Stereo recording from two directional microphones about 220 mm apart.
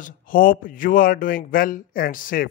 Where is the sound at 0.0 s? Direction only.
40° left (ahead or behind).